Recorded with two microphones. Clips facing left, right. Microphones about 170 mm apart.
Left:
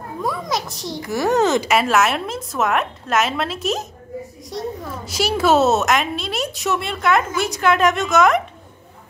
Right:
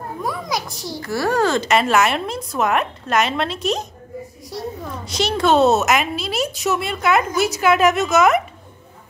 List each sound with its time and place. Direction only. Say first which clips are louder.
0.2 s a child's voice: left 2 dB; centre (ahead or behind)
1.0 s a child's voice: left 1 dB; 20° left (ahead or behind)
1.7 s a child's voice: right 1 dB; 5° left (ahead or behind)